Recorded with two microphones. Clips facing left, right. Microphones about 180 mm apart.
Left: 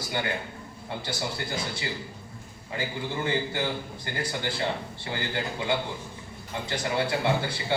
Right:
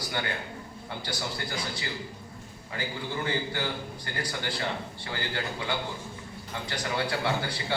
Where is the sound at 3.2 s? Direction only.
25° left (ahead or behind).